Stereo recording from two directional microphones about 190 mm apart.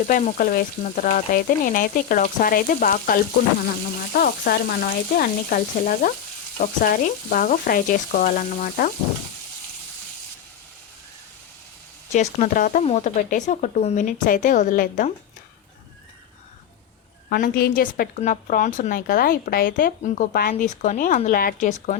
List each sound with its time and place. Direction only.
0.1 s speech: 45° left (ahead or behind)
12.1 s speech: 40° left (ahead or behind)
17.2 s speech: 50° left (ahead or behind)